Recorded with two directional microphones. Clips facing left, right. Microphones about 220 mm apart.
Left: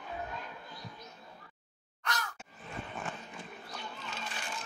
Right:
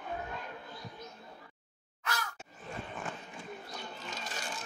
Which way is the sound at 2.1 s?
5° right (ahead or behind).